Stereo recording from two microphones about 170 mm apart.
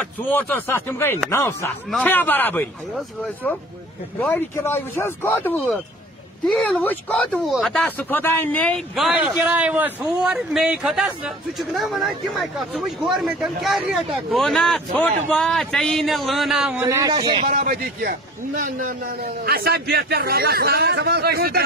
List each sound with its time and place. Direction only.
0.0 s speech: 10° left (ahead or behind)
4.2 s a man's voice: 10° left (ahead or behind)
16.8 s speech: 20° right (ahead or behind)
17.5 s a man's voice: 45° right (ahead or behind)
17.7 s a man's voice: 55° right (ahead or behind)